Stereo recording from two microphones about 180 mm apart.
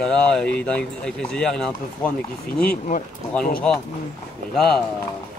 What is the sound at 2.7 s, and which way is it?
Speech, 50° left (ahead or behind).